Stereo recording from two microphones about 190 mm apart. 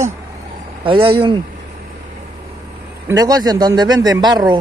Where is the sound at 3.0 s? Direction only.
20° right (ahead or behind).